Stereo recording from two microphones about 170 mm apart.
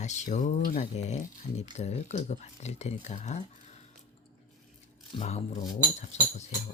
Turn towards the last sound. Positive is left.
turn(degrees=40)  # may be behind; listen again after turning